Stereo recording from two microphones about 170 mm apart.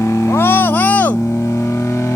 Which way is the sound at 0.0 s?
15° left (ahead or behind).